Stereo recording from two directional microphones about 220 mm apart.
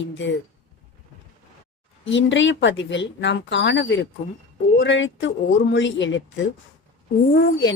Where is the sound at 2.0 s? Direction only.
55° left (ahead or behind).